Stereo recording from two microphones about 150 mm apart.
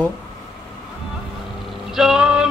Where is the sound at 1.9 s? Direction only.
5° right (ahead or behind).